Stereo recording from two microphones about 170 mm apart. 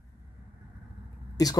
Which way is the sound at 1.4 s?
20° left (ahead or behind).